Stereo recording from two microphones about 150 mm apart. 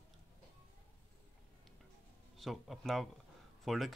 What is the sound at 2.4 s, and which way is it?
Speech, centre (ahead or behind).